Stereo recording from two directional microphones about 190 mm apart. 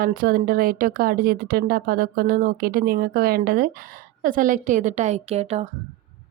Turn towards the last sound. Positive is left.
turn(degrees=-35)  # may be behind; listen again after turning